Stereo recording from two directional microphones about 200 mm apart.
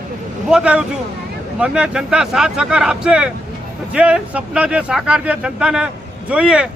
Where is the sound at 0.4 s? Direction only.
5° right (ahead or behind).